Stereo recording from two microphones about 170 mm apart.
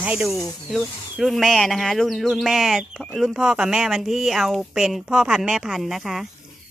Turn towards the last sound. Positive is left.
turn(degrees=0)  # may be behind; listen again after turning